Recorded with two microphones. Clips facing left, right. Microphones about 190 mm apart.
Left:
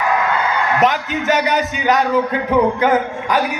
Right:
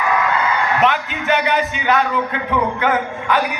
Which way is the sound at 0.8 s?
40° left (ahead or behind).